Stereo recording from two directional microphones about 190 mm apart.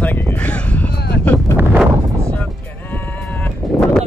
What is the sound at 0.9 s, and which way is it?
Vehicle, 60° left (ahead or behind).